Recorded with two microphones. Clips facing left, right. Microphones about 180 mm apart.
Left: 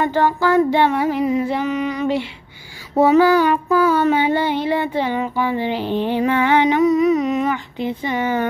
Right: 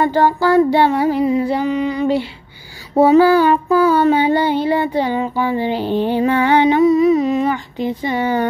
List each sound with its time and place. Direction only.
0.0 s child singing: 35° right (ahead or behind)